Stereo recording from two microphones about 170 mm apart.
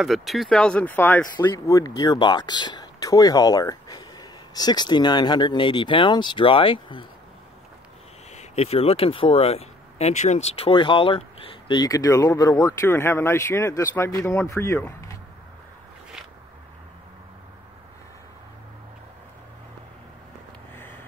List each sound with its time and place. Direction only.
0.0 s speech: centre (ahead or behind)
1.5 s speech: 20° left (ahead or behind)
8.3 s speech: 40° left (ahead or behind); by 15.1 s 15° left (ahead or behind)
20.7 s a sound: 10° left (ahead or behind)